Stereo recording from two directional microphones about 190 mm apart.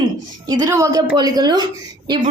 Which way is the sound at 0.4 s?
20° right (ahead or behind).